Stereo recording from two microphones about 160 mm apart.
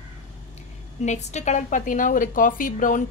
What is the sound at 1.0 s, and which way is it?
A woman's voice, 45° left (ahead or behind).